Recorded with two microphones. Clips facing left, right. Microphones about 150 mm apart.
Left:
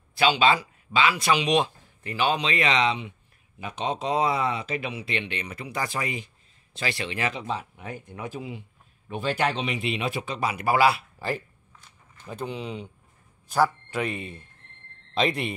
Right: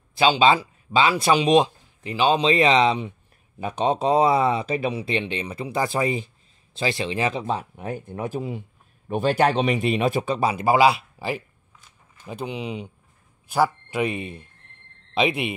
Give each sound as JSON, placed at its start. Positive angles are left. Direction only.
{"t": 0.2, "sound": "speech", "side_deg": -25}
{"t": 7.4, "sound": "speech", "side_deg": -45}